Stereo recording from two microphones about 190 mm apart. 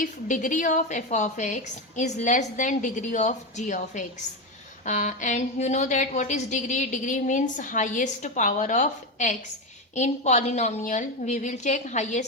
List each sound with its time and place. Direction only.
0.0 s a woman's voice: 45° left (ahead or behind)